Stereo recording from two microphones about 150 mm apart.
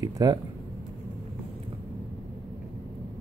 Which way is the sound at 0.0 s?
25° right (ahead or behind).